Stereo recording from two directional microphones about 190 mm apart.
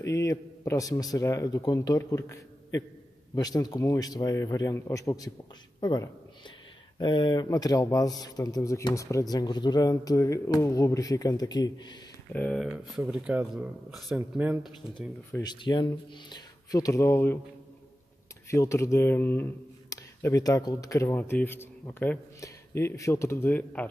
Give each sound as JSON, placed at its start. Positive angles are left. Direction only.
{"t": 0.0, "sound": "a man's voice", "side_deg": 15}
{"t": 12.3, "sound": "speech", "side_deg": 5}
{"t": 15.4, "sound": "speech", "side_deg": 25}
{"t": 18.5, "sound": "speech", "side_deg": 15}